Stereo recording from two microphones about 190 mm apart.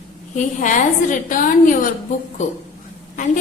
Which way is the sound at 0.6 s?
45° left (ahead or behind).